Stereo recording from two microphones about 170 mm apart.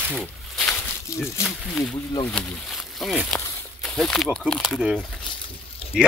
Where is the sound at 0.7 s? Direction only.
15° left (ahead or behind).